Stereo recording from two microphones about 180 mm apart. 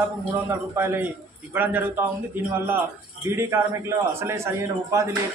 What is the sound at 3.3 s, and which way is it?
A man's voice, 15° right (ahead or behind).